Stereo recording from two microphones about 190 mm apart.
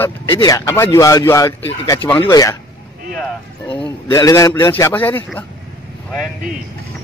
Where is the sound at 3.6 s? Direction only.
15° left (ahead or behind).